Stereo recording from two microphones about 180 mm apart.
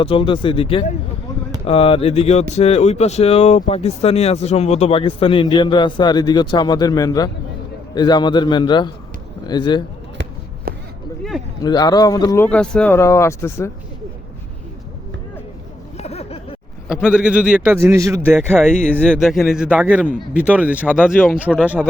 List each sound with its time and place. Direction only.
0.0 s a man's voice: 30° left (ahead or behind)
10.7 s a sound: 55° right (ahead or behind)
11.2 s speech: centre (ahead or behind)
11.6 s a man's voice: 20° left (ahead or behind)
12.5 s speech: 5° left (ahead or behind)
16.0 s a sound: 35° left (ahead or behind)
16.9 s a man's voice: 5° right (ahead or behind)
18.7 s a man's voice: 5° left (ahead or behind)
21.2 s speech: 10° left (ahead or behind)
21.8 s a man's voice: centre (ahead or behind)